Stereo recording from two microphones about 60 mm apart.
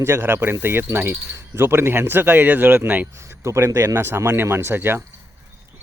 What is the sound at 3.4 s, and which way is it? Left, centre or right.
Speech, right.